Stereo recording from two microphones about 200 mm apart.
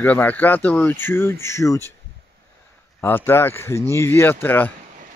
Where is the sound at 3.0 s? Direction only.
10° left (ahead or behind).